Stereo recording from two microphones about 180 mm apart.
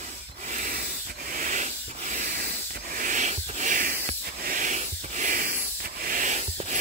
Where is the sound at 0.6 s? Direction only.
50° right (ahead or behind).